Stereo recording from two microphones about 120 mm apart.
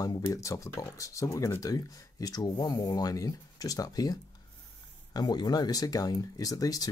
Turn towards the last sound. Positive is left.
turn(degrees=30)  # may be behind; listen again after turning